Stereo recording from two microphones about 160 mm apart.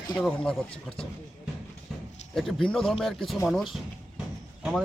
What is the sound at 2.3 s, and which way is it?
Speech, 5° left (ahead or behind).